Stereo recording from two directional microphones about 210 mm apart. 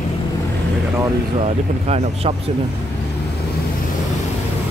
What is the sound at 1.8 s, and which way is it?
Speech, 30° right (ahead or behind).